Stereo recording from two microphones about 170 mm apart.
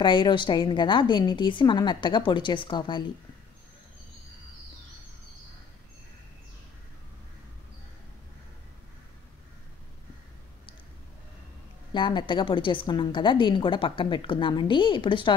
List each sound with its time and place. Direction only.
0.0 s a woman's voice: 30° left (ahead or behind)
11.9 s a woman's voice: 25° left (ahead or behind)